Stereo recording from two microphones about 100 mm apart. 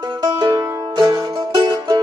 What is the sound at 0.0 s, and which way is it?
Music, 40° right (ahead or behind).